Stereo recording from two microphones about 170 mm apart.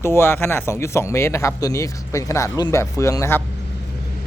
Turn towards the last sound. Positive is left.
turn(degrees=15)  # may be behind; listen again after turning